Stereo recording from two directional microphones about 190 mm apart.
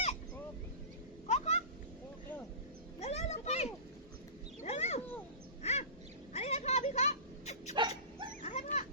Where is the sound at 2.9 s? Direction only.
35° left (ahead or behind).